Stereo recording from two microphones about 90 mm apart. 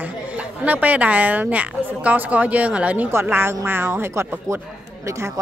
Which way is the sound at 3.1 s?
25° right (ahead or behind).